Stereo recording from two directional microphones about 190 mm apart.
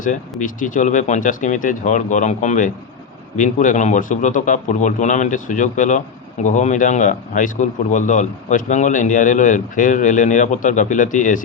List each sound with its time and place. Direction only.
0.0 s speech: 45° left (ahead or behind)